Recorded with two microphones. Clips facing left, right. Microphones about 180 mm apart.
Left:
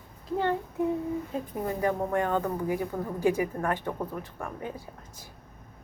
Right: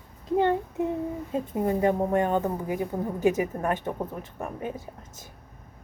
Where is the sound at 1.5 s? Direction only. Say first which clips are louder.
Right 5 dB; 25° right (ahead or behind).